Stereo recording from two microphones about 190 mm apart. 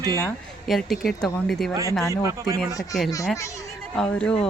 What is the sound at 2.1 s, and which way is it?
Speech, 15° right (ahead or behind).